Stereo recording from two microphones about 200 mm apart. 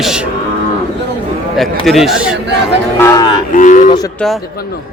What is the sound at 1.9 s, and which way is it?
Speech, centre (ahead or behind).